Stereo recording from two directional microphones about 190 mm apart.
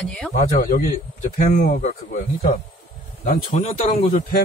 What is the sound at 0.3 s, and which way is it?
Speech, 45° left (ahead or behind).